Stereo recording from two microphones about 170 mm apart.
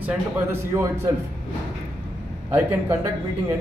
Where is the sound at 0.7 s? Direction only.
15° right (ahead or behind).